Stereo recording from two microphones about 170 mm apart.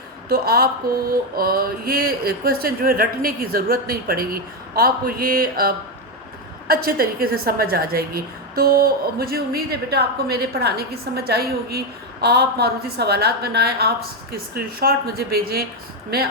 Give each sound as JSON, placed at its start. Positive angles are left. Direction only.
{"t": 0.3, "sound": "a woman's voice", "side_deg": -65}